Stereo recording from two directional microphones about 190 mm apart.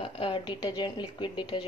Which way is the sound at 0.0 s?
25° left (ahead or behind).